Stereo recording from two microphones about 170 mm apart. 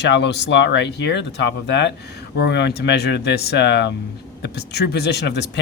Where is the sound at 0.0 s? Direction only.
90° left.